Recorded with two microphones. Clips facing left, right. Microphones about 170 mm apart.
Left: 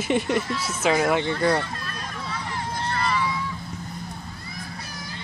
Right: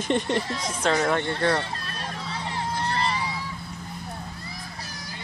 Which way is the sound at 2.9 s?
35° right (ahead or behind).